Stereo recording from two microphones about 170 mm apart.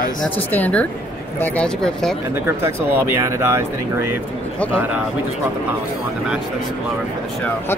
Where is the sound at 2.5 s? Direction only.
15° right (ahead or behind).